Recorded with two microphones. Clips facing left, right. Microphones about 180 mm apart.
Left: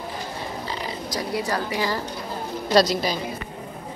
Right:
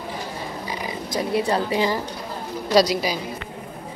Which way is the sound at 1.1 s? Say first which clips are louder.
Right 5 dB; 25° right (ahead or behind).